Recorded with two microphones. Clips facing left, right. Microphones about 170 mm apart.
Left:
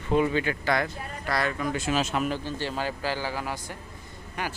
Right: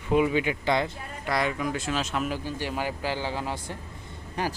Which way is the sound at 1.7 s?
Centre (ahead or behind).